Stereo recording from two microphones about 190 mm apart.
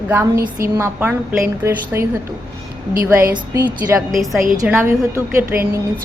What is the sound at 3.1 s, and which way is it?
Speech, 15° right (ahead or behind).